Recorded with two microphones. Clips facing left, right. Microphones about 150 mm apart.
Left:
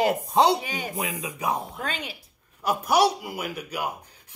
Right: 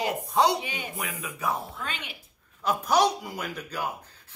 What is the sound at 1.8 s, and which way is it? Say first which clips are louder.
Speech: left 4 dB; 35° left (ahead or behind).